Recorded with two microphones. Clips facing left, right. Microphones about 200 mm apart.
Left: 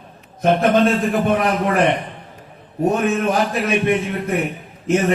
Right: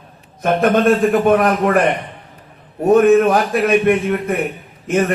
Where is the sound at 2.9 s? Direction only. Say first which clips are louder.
Right 11 dB; 55° right (ahead or behind).